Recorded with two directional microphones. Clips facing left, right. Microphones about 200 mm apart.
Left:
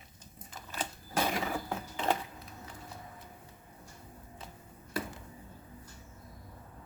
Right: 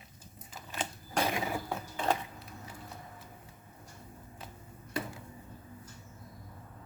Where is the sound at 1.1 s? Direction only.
Centre (ahead or behind).